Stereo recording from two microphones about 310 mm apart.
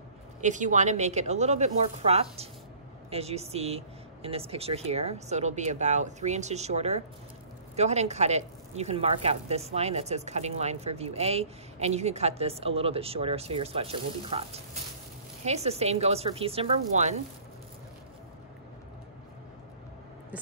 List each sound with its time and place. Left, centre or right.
0.4 s speech: right